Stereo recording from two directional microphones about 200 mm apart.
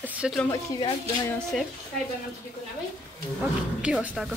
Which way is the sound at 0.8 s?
20° left (ahead or behind).